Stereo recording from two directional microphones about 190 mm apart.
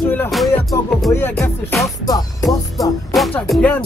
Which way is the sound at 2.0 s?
20° left (ahead or behind).